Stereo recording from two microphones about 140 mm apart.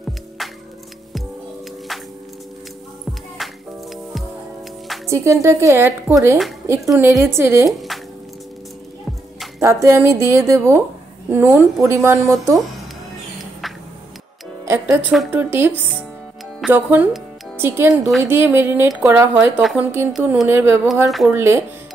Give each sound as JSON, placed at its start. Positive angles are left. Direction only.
{"t": 0.4, "sound": "music", "side_deg": 0}
{"t": 3.4, "sound": "music", "side_deg": 0}
{"t": 5.0, "sound": "a woman's voice", "side_deg": -20}
{"t": 9.6, "sound": "a woman's voice", "side_deg": -20}
{"t": 13.4, "sound": "music", "side_deg": 0}
{"t": 14.6, "sound": "music", "side_deg": -20}
{"t": 15.3, "sound": "speech", "side_deg": -15}
{"t": 19.3, "sound": "speech", "side_deg": -5}
{"t": 19.8, "sound": "speech", "side_deg": -15}
{"t": 20.9, "sound": "speech", "side_deg": 0}
{"t": 21.3, "sound": "speech", "side_deg": -15}